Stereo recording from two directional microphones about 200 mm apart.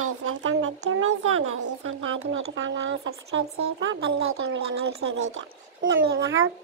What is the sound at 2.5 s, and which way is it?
Speech, 70° right (ahead or behind).